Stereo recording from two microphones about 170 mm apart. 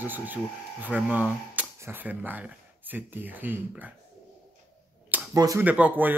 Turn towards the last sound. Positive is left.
turn(degrees=-10)  # may be behind; listen again after turning